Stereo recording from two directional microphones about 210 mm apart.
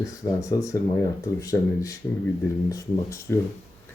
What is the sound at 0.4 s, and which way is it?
Speech, 15° left (ahead or behind).